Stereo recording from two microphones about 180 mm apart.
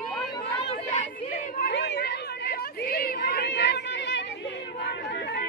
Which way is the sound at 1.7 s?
70° left (ahead or behind).